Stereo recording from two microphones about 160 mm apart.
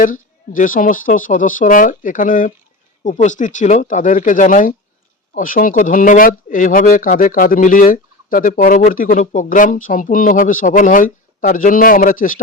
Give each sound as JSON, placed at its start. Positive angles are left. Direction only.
{"t": 0.0, "sound": "speech", "side_deg": 55}